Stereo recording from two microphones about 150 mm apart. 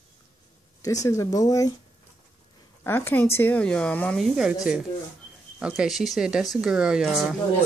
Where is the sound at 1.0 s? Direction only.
20° left (ahead or behind).